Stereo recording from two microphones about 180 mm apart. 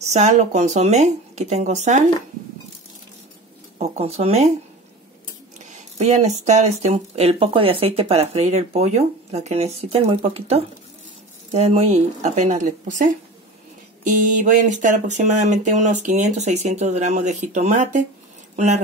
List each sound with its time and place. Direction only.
0.0 s speech: 40° right (ahead or behind)
3.7 s speech: 35° right (ahead or behind)
5.9 s speech: 40° right (ahead or behind)